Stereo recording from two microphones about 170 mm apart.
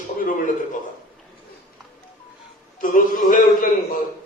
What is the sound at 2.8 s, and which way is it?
Speech, 50° left (ahead or behind).